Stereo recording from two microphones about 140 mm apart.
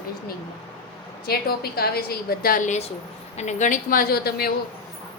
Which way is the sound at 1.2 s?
90° left.